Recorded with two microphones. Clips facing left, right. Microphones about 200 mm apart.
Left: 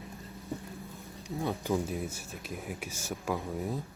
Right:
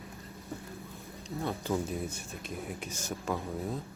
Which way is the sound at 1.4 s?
15° left (ahead or behind).